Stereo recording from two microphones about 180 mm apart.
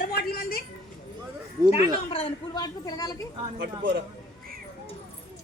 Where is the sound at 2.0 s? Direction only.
30° left (ahead or behind).